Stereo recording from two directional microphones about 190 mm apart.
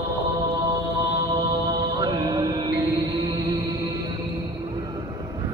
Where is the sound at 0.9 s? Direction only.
15° right (ahead or behind).